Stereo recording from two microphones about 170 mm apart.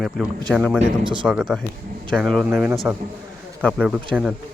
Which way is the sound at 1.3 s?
5° right (ahead or behind).